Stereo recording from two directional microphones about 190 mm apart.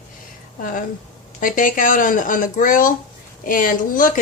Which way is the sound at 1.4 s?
45° left (ahead or behind).